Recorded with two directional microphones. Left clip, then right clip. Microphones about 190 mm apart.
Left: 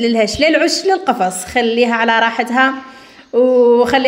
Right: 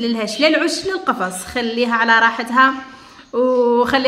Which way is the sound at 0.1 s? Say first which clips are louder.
Even; 15° left (ahead or behind).